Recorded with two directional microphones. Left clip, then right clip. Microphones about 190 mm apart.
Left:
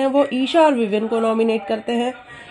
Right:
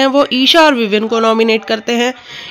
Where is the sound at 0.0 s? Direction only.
20° right (ahead or behind).